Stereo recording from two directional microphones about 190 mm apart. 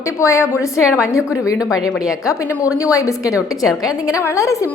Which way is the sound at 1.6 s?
5° right (ahead or behind).